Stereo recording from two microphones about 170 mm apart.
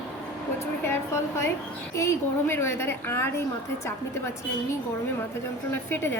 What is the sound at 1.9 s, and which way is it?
A woman's voice, 15° left (ahead or behind).